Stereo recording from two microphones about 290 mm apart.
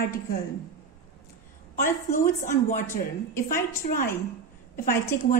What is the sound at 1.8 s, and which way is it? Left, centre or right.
Speech, left.